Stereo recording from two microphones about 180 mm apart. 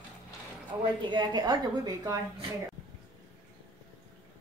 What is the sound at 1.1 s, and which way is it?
A woman's voice, 25° right (ahead or behind).